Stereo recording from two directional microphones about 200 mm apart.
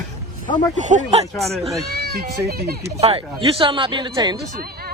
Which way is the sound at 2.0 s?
50° right (ahead or behind).